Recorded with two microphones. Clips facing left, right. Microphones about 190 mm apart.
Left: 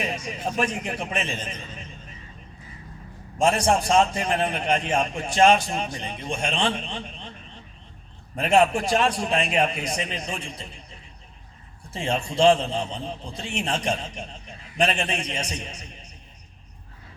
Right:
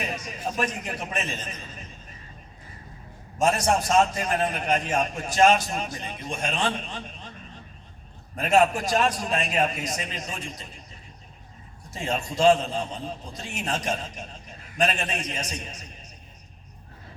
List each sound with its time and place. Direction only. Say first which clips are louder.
0.1 s a man's voice: left 2 dB; 25° left (ahead or behind)
3.3 s a man's voice: left 2 dB; 30° left (ahead or behind)
8.4 s a man's voice: left 1 dB; 30° left (ahead or behind)
11.9 s a man's voice: left 2 dB; 30° left (ahead or behind)